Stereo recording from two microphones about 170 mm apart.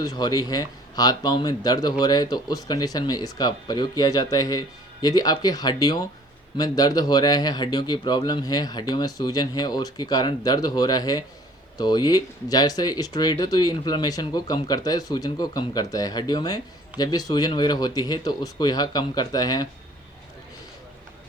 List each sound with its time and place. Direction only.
0.0 s speech: 25° left (ahead or behind)